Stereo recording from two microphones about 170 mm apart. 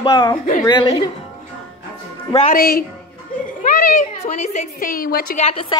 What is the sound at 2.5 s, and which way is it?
A woman's voice, 60° left (ahead or behind).